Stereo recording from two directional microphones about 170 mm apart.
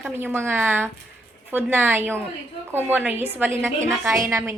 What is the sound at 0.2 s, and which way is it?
A woman's voice, 15° right (ahead or behind).